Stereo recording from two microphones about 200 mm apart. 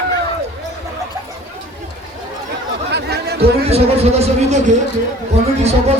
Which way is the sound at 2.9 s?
55° right (ahead or behind).